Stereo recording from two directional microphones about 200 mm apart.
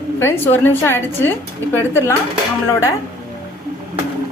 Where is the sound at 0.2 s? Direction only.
10° left (ahead or behind).